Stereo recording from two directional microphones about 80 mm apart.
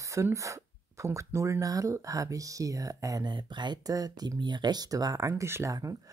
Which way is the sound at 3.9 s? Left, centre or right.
Right.